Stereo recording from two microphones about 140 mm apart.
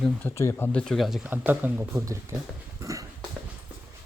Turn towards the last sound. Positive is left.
turn(degrees=-25)  # may be behind; listen again after turning